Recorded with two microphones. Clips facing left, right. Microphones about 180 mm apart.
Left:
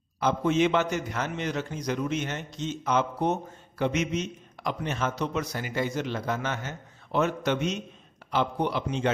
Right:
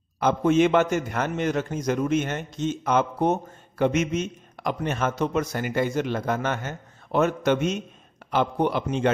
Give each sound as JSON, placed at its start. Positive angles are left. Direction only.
{"t": 0.2, "sound": "a man's voice", "side_deg": -50}